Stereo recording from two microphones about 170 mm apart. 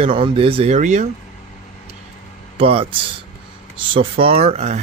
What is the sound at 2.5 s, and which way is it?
Speech, 35° right (ahead or behind).